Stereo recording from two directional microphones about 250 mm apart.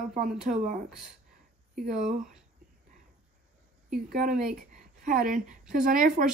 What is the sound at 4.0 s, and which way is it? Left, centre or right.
A woman's voice, right.